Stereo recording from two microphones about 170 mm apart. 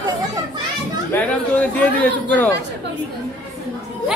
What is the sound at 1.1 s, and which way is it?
Speech, 15° left (ahead or behind).